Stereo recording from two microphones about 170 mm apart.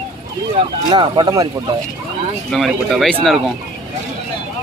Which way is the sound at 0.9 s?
25° right (ahead or behind).